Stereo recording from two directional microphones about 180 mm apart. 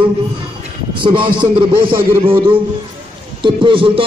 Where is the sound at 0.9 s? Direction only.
25° right (ahead or behind).